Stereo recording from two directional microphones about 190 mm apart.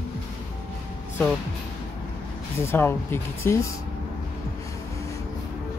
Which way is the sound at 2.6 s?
10° left (ahead or behind).